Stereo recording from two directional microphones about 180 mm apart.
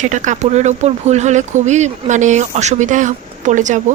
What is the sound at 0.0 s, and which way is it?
A woman's voice, 45° right (ahead or behind).